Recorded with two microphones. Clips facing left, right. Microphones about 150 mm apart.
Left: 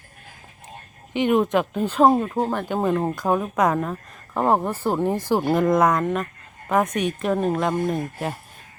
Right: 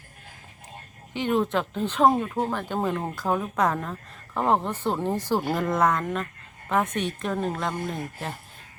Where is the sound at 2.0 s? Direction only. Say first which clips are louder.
Left 3 dB; 30° left (ahead or behind).